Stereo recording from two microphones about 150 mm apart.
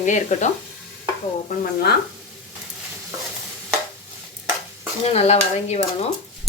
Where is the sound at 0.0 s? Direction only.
55° left (ahead or behind).